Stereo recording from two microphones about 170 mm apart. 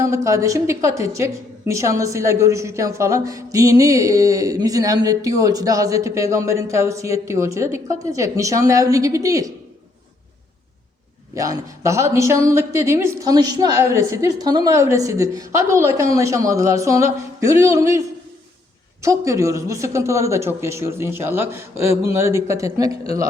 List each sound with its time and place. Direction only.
0.0 s a woman's voice: 15° right (ahead or behind)
11.3 s speech: 20° right (ahead or behind)
19.0 s speech: 20° right (ahead or behind)